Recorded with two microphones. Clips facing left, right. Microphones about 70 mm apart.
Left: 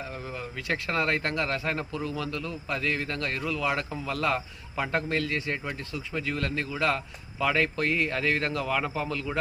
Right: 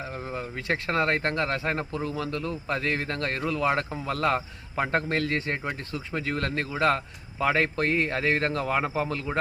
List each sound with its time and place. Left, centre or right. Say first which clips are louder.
0.3 s a man's voice: right 3 dB; right